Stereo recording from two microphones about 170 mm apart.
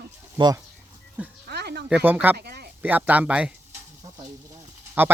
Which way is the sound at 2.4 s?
70° right (ahead or behind).